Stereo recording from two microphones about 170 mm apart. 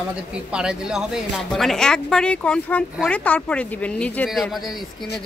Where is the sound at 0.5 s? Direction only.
5° right (ahead or behind).